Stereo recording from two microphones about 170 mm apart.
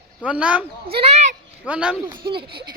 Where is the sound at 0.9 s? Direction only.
40° right (ahead or behind).